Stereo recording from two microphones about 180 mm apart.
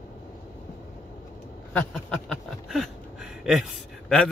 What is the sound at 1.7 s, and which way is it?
Speech, 5° left (ahead or behind).